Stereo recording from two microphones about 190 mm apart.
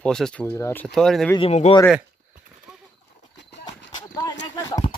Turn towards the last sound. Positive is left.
turn(degrees=20)  # may be behind; listen again after turning